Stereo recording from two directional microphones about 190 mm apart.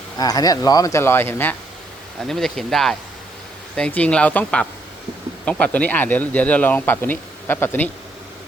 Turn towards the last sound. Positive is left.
turn(degrees=10)  # may be behind; listen again after turning